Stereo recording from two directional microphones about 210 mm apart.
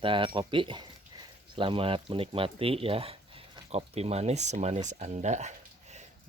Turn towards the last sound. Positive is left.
turn(degrees=-35)  # may be behind; listen again after turning